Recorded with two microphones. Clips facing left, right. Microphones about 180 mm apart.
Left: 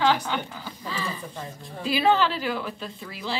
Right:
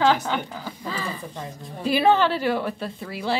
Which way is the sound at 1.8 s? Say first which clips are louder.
Right 3 dB; 50° right (ahead or behind).